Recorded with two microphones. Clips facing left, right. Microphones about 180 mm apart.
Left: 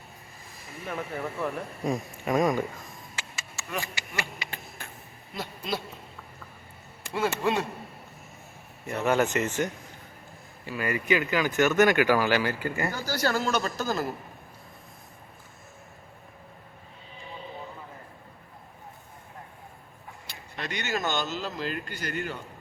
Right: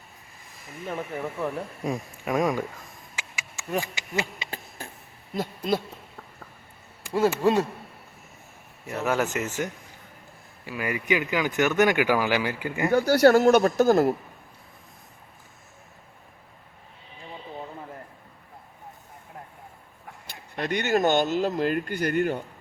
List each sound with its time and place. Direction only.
1.4 s speech: 5° right (ahead or behind)
3.2 s a sound: 15° right (ahead or behind)
3.8 s speech: 20° right (ahead or behind)
5.3 s speech: 45° right (ahead or behind)
7.4 s a man's voice: 40° right (ahead or behind)
8.9 s speech: 5° right (ahead or behind)
10.7 s speech: 15° right (ahead or behind)
12.9 s speech: 65° right (ahead or behind)
20.3 s speech: 55° right (ahead or behind)